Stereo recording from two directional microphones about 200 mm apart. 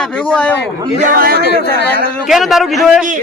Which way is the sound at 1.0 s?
45° right (ahead or behind).